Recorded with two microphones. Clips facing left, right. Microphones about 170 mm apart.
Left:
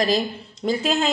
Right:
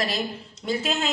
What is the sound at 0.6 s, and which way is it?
Speech, 35° left (ahead or behind).